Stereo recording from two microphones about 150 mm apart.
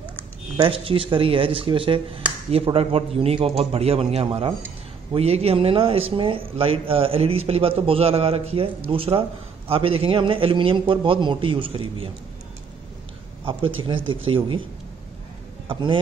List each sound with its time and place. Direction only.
0.6 s a man's voice: 35° right (ahead or behind)
13.5 s a man's voice: 35° right (ahead or behind)
15.7 s a man's voice: 35° right (ahead or behind)